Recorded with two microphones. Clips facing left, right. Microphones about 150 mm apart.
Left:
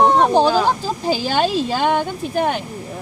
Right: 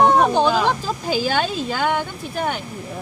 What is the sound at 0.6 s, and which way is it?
A woman's voice, 35° left (ahead or behind).